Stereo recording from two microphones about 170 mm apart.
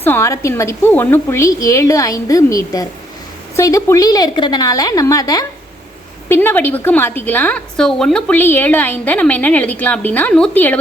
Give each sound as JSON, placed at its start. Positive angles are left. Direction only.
{"t": 0.0, "sound": "a woman's voice", "side_deg": 15}